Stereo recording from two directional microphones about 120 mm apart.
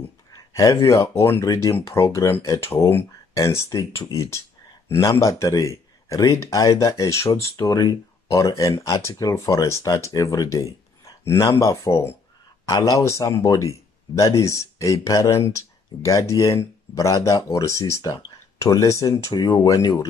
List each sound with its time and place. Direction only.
0.3 s speech: 30° left (ahead or behind)